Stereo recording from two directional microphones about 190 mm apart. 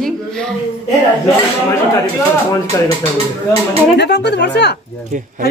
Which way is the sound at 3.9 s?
60° left (ahead or behind).